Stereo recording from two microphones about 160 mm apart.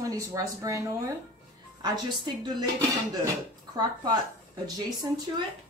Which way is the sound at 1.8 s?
25° right (ahead or behind).